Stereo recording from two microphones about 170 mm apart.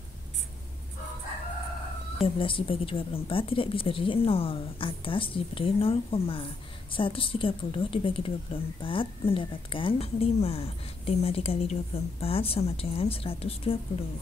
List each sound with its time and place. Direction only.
2.2 s speech: 30° left (ahead or behind)